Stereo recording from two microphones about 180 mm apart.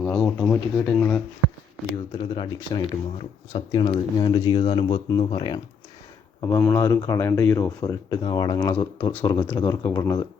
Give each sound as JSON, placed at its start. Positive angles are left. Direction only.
{"t": 0.0, "sound": "speech", "side_deg": 5}
{"t": 2.1, "sound": "speech", "side_deg": 25}
{"t": 6.4, "sound": "speech", "side_deg": 15}